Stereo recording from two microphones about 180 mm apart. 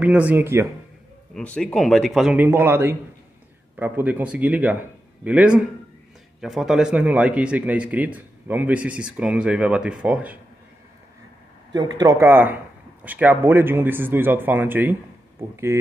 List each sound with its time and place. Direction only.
0.0 s a man's voice: 10° right (ahead or behind)
1.3 s a man's voice: 5° left (ahead or behind)
11.7 s a man's voice: 20° right (ahead or behind)